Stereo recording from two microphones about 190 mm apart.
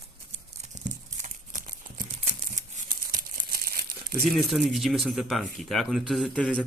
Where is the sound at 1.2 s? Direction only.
45° right (ahead or behind).